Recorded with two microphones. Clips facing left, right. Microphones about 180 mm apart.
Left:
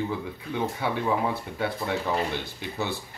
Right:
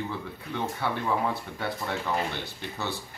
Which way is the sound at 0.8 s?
15° left (ahead or behind).